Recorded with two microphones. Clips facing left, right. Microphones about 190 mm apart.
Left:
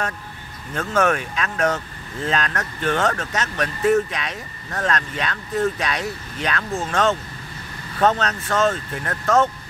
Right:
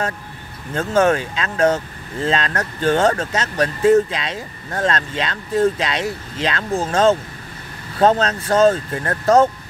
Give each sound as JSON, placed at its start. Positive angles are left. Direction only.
{"t": 0.7, "sound": "speech", "side_deg": -30}